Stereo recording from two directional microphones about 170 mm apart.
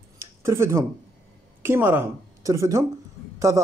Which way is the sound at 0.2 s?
15° right (ahead or behind).